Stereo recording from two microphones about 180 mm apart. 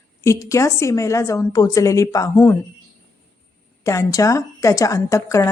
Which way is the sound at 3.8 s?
15° left (ahead or behind).